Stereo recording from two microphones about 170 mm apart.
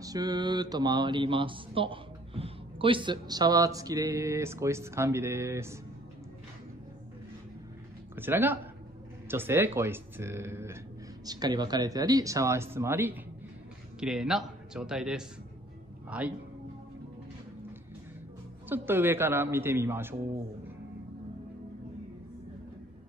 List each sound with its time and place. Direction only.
0.0 s speech: 20° right (ahead or behind)
8.2 s a man's voice: 10° right (ahead or behind)
18.7 s a man's voice: 10° right (ahead or behind)